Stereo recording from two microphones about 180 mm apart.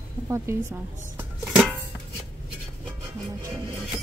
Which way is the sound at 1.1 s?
5° right (ahead or behind).